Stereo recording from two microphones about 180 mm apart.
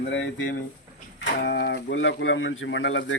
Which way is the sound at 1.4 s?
80° left.